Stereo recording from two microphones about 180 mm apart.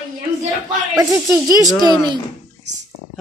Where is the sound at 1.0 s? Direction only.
20° right (ahead or behind).